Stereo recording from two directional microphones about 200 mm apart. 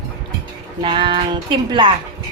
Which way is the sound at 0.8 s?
25° right (ahead or behind).